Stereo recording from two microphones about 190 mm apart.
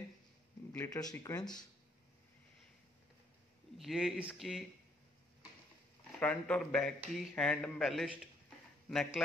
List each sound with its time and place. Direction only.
0.7 s speech: 15° left (ahead or behind)
3.7 s speech: centre (ahead or behind)
6.1 s speech: 5° left (ahead or behind)